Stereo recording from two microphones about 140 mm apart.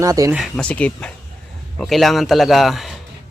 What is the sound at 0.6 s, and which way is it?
Speech, 10° left (ahead or behind).